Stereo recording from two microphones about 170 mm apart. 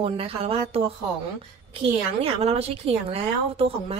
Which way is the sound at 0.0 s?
35° right (ahead or behind).